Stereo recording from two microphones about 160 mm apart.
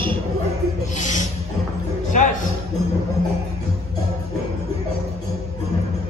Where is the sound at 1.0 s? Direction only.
50° left (ahead or behind).